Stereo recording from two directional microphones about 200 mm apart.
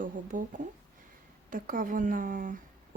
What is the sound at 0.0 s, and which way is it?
Speech, 40° right (ahead or behind).